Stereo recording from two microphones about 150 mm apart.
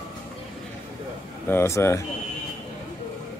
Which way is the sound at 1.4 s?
15° left (ahead or behind).